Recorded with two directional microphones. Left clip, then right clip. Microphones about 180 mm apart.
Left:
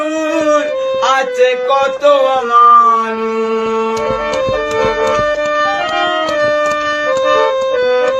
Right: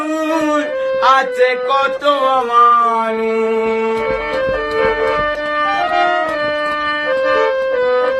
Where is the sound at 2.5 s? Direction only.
15° right (ahead or behind).